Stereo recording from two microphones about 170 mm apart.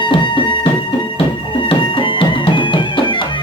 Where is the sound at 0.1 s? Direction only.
30° left (ahead or behind).